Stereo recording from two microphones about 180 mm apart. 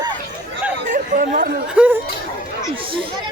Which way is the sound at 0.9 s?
50° right (ahead or behind).